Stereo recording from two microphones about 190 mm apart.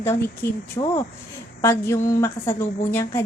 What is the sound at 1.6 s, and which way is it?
A woman's voice, 15° left (ahead or behind).